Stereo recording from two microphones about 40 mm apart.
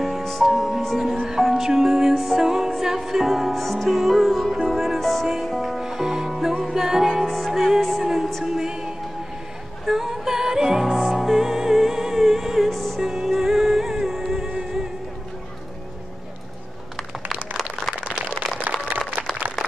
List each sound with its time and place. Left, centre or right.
0.0 s music: centre
7.2 s music: centre
12.7 s music: centre
13.0 s music: centre
17.6 s a sound: centre
18.9 s applause: right